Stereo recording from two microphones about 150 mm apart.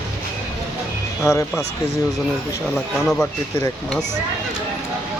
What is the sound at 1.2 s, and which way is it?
Speech, 20° left (ahead or behind).